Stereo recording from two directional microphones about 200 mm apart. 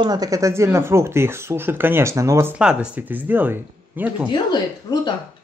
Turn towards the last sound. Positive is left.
turn(degrees=20)  # may be behind; listen again after turning